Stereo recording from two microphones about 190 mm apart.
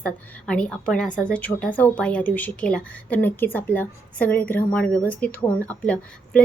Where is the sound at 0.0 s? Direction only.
5° left (ahead or behind).